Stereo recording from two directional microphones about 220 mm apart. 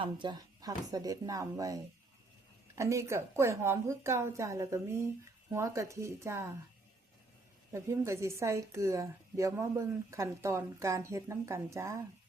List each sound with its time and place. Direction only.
0.0 s a woman's voice: 20° right (ahead or behind)
7.7 s a woman's voice: 15° right (ahead or behind)